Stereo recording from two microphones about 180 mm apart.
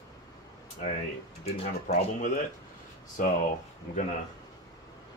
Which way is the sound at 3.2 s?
50° left (ahead or behind).